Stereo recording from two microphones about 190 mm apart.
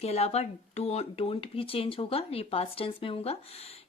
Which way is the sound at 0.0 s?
35° left (ahead or behind).